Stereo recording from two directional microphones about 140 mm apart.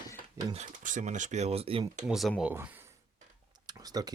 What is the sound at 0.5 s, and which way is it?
Speech, 60° right (ahead or behind).